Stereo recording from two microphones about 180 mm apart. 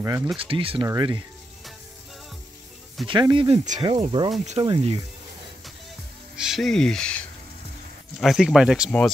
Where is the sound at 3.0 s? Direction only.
25° right (ahead or behind).